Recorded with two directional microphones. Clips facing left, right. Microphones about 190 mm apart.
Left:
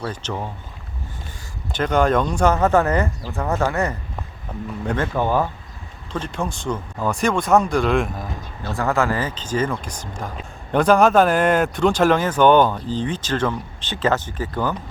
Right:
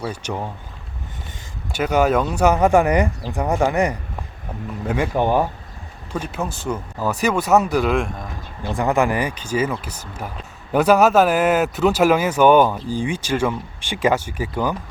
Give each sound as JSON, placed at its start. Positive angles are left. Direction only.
{"t": 0.0, "sound": "speech", "side_deg": -10}
{"t": 1.7, "sound": "speech", "side_deg": -10}
{"t": 6.1, "sound": "speech", "side_deg": -5}
{"t": 8.6, "sound": "speech", "side_deg": -15}